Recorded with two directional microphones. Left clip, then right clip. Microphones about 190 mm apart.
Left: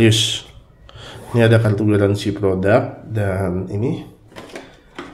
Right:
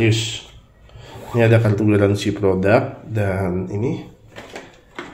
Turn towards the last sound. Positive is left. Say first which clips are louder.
# even
turn(degrees=20)  # may be behind; listen again after turning